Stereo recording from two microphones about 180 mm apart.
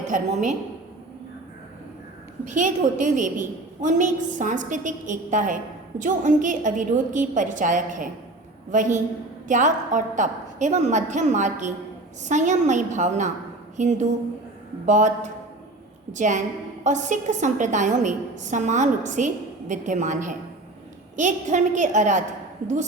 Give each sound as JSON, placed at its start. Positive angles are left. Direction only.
{"t": 0.1, "sound": "a woman's voice", "side_deg": -45}
{"t": 2.4, "sound": "a woman's voice", "side_deg": -45}